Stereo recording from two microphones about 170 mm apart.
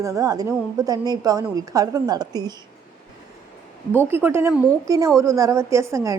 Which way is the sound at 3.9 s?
15° right (ahead or behind).